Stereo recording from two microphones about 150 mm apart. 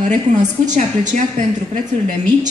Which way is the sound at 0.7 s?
55° right (ahead or behind).